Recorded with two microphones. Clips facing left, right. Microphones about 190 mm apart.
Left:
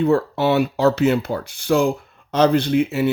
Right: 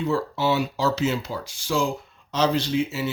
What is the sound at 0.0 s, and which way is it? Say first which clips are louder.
Speech: left 6 dB; 60° left (ahead or behind).